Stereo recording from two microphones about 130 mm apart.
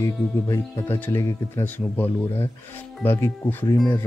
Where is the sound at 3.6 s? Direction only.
30° left (ahead or behind).